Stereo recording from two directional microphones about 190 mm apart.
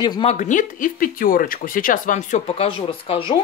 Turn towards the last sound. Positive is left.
turn(degrees=25)  # may be behind; listen again after turning